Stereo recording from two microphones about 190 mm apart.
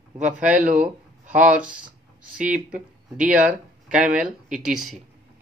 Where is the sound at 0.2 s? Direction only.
5° right (ahead or behind).